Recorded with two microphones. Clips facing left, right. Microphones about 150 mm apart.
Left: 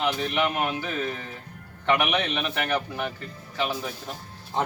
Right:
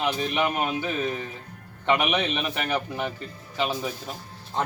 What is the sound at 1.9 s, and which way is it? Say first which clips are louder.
A man's voice: even; 15° right (ahead or behind).